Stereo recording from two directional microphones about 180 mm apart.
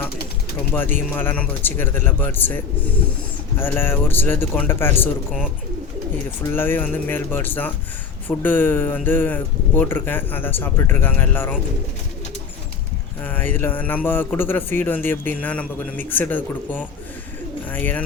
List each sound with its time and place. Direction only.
0.9 s a man's voice: 10° left (ahead or behind)
6.4 s a man's voice: 10° left (ahead or behind)
13.2 s a man's voice: 10° left (ahead or behind)